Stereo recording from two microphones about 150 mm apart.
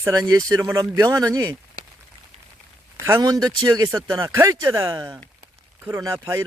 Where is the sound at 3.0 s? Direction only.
20° right (ahead or behind).